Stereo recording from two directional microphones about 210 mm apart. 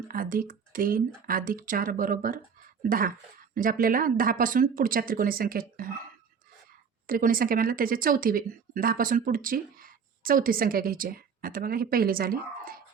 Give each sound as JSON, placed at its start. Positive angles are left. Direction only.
{"t": 0.1, "sound": "speech", "side_deg": -45}
{"t": 7.1, "sound": "speech", "side_deg": -40}